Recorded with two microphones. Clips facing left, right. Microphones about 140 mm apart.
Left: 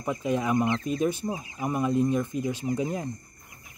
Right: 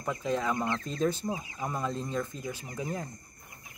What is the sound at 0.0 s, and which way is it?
Speech, 15° left (ahead or behind).